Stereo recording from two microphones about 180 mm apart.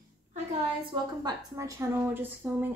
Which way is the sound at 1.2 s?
20° right (ahead or behind).